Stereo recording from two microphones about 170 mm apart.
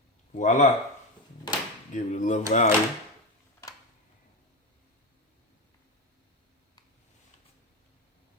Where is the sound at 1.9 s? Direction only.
45° left (ahead or behind).